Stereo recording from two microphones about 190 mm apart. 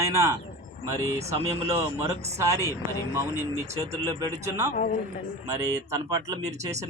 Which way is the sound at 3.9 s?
15° right (ahead or behind).